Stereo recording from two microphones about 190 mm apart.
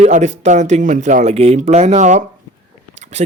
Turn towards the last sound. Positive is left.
turn(degrees=-35)  # may be behind; listen again after turning